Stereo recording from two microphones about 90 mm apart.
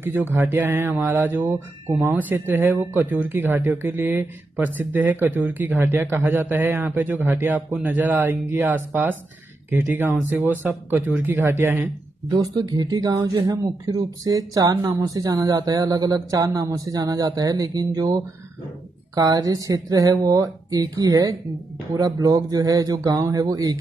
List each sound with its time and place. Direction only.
0.0 s speech: 20° right (ahead or behind)
12.3 s speech: 50° right (ahead or behind)